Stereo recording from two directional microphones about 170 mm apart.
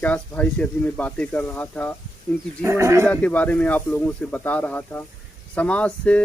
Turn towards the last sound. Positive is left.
turn(degrees=5)  # may be behind; listen again after turning